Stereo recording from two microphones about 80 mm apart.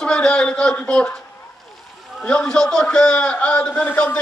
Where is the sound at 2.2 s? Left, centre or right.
Centre.